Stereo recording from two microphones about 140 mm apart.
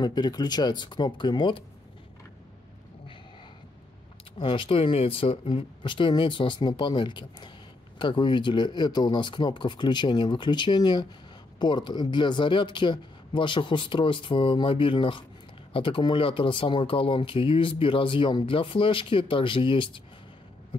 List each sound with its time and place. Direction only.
0.0 s speech: 30° left (ahead or behind)
4.4 s speech: 35° left (ahead or behind)